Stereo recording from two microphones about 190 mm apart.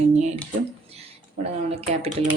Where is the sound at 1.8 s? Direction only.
35° right (ahead or behind).